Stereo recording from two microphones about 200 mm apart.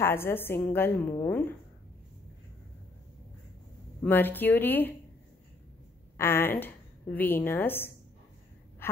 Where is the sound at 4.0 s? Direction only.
10° left (ahead or behind).